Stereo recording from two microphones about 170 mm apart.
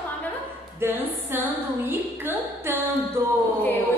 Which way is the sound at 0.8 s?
15° right (ahead or behind).